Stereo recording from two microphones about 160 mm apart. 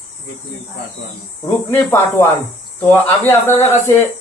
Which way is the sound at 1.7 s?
15° left (ahead or behind).